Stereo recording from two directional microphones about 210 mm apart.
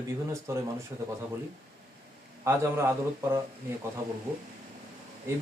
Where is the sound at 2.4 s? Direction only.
10° right (ahead or behind).